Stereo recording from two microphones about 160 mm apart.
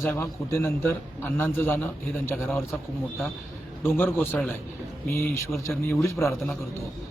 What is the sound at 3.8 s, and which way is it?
Speech, 15° left (ahead or behind).